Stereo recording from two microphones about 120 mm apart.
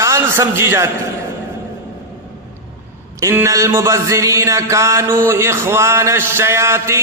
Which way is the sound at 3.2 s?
25° right (ahead or behind).